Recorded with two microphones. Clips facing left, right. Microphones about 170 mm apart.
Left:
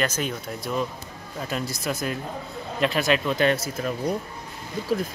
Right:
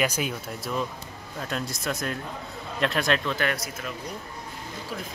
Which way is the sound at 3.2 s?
20° left (ahead or behind).